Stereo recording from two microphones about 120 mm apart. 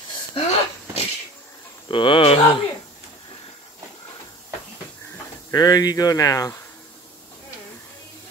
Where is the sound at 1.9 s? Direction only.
45° left (ahead or behind).